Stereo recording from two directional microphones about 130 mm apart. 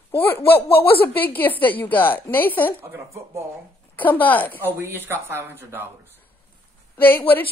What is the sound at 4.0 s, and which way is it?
Speech, 15° left (ahead or behind).